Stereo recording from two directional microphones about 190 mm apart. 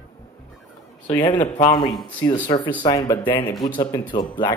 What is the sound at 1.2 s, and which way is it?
Speech, 25° left (ahead or behind).